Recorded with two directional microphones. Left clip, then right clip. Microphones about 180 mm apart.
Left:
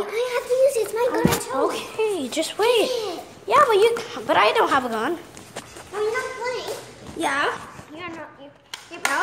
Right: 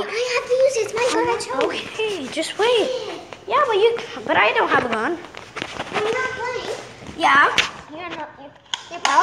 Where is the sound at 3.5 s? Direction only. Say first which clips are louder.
Left 1 dB; 20° left (ahead or behind).